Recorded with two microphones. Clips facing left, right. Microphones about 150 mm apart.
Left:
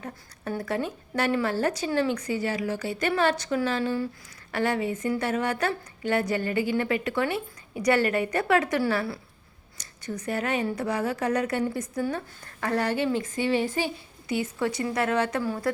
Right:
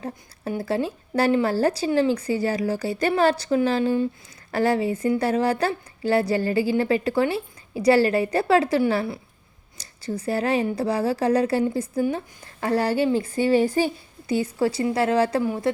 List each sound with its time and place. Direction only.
0.0 s a woman's voice: 30° right (ahead or behind)
15.4 s speech: 20° right (ahead or behind)